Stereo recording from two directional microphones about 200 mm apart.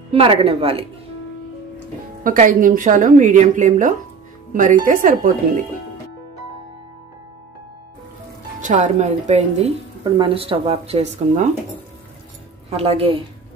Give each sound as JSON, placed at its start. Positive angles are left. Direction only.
{"t": 0.1, "sound": "speech", "side_deg": -25}
{"t": 2.2, "sound": "speech", "side_deg": -40}
{"t": 8.5, "sound": "speech", "side_deg": -40}
{"t": 12.6, "sound": "speech", "side_deg": -30}